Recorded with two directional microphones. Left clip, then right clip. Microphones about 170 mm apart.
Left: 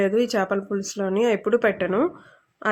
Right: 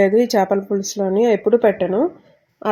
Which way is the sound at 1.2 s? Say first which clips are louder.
Right 6 dB; 30° right (ahead or behind).